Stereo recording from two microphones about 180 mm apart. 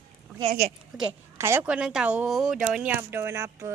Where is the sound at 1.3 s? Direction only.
15° right (ahead or behind).